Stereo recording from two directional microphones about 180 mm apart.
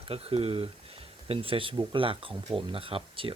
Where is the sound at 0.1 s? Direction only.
30° right (ahead or behind).